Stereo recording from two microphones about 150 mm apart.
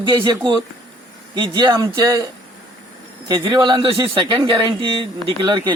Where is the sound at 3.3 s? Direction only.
30° right (ahead or behind).